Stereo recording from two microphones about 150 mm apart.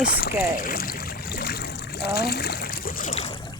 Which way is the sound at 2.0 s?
90° left.